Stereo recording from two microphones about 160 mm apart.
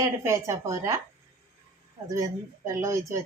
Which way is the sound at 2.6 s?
20° right (ahead or behind).